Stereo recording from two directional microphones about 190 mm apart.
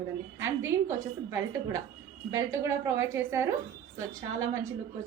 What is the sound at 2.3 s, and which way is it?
A woman's voice, 15° right (ahead or behind).